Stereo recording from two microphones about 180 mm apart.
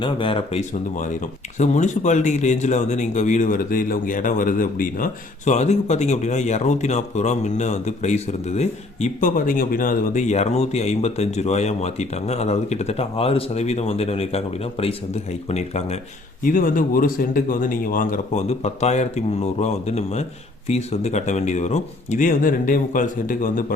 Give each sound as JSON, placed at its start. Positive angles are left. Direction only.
{"t": 0.0, "sound": "speech", "side_deg": 30}
{"t": 0.7, "sound": "speech", "side_deg": 45}
{"t": 16.4, "sound": "speech", "side_deg": 50}